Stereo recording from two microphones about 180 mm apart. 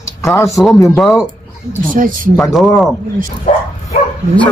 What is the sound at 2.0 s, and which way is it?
Speech, 50° right (ahead or behind).